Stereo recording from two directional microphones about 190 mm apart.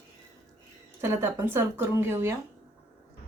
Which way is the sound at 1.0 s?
10° right (ahead or behind).